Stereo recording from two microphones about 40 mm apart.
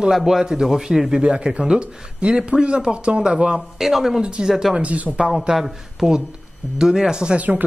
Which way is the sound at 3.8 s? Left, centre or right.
Centre.